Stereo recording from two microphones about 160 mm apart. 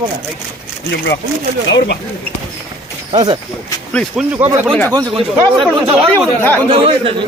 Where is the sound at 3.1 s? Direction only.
30° right (ahead or behind).